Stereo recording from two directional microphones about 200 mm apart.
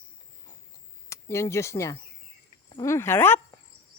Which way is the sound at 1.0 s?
15° left (ahead or behind).